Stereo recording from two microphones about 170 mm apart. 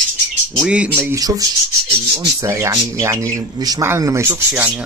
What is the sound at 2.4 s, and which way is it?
Speech, 15° right (ahead or behind).